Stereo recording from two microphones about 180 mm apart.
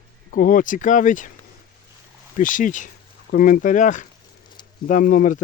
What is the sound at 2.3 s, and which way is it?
Speech, 45° left (ahead or behind).